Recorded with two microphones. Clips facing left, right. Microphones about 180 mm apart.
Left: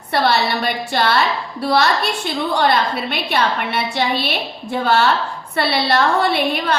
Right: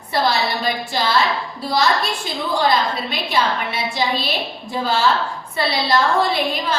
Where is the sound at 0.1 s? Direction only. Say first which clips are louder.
Left 2 dB; 65° left (ahead or behind).